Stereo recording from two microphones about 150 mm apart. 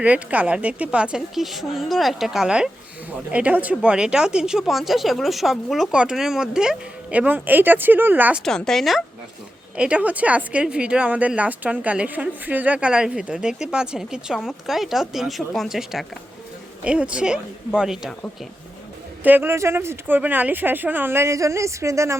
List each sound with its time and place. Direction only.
0.0 s speech: 10° right (ahead or behind)
8.4 s speech: 5° left (ahead or behind)
19.2 s speech: 15° right (ahead or behind)